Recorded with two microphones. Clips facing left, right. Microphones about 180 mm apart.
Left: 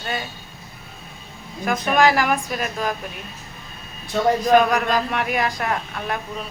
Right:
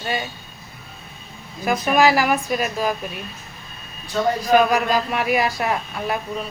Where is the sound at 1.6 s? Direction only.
5° right (ahead or behind).